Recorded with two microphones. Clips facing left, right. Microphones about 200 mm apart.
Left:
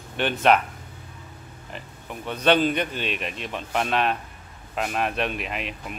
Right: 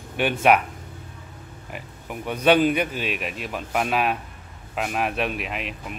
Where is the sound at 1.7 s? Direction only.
10° right (ahead or behind).